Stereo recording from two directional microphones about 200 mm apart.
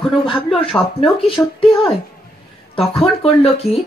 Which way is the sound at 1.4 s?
10° left (ahead or behind).